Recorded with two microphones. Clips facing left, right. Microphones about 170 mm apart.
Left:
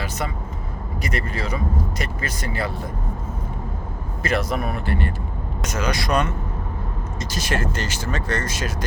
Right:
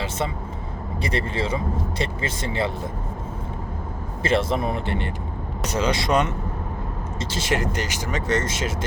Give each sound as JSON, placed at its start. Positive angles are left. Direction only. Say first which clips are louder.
{"t": 1.0, "sound": "speech", "louder": "right 2 dB", "side_deg": -30}
{"t": 4.2, "sound": "speech", "louder": "right 2 dB", "side_deg": -25}